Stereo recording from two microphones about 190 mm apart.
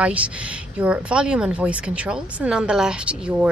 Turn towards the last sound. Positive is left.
turn(degrees=-5)  # may be behind; listen again after turning